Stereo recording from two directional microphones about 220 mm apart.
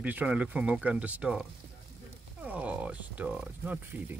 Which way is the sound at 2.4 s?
5° right (ahead or behind).